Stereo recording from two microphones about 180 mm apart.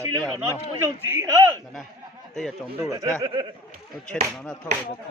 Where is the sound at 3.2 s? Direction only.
30° right (ahead or behind).